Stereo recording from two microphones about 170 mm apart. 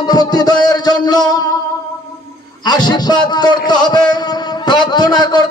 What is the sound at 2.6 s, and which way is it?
Music, 25° left (ahead or behind).